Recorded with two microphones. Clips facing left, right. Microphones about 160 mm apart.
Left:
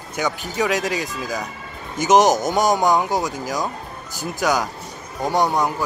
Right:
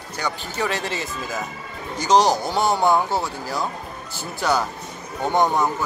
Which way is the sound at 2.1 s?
20° left (ahead or behind).